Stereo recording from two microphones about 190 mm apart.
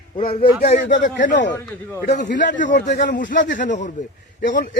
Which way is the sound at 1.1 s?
70° left (ahead or behind).